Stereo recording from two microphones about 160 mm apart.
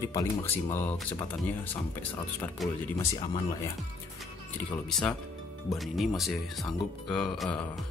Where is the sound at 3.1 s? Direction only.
30° left (ahead or behind).